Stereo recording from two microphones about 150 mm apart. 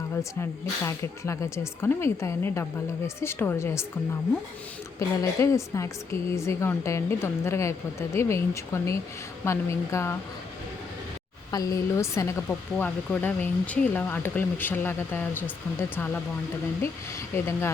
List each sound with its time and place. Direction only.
0.9 s a woman's voice: 20° left (ahead or behind)
4.9 s a woman's voice: 20° left (ahead or behind)
11.5 s a woman's voice: 25° left (ahead or behind)
16.8 s speech: 20° left (ahead or behind)